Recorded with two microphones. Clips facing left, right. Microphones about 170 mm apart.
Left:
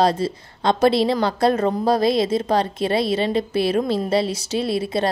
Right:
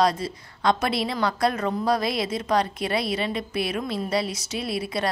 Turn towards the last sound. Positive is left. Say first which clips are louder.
# left 6 dB
turn(degrees=25)  # may be behind; listen again after turning